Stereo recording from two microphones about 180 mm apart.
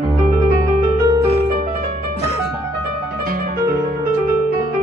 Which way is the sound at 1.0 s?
20° right (ahead or behind).